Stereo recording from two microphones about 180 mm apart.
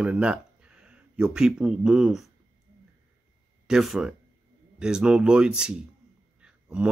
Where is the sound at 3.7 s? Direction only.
Centre (ahead or behind).